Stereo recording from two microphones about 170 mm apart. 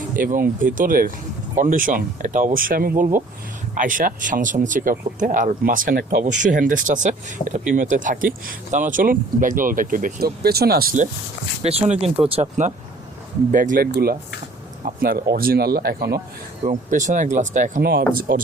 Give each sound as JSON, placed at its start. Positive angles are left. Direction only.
{"t": 0.2, "sound": "speech", "side_deg": -55}
{"t": 11.6, "sound": "speech", "side_deg": -40}
{"t": 16.6, "sound": "speech", "side_deg": -50}
{"t": 17.8, "sound": "speech", "side_deg": -60}